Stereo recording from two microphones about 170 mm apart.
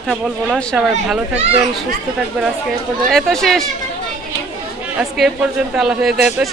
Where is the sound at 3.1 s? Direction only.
Centre (ahead or behind).